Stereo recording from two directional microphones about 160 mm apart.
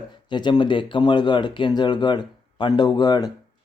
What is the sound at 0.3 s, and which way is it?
Speech, 30° left (ahead or behind).